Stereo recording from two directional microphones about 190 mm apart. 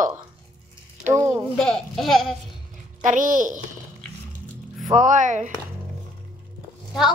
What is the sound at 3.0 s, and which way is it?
Speech, 45° right (ahead or behind).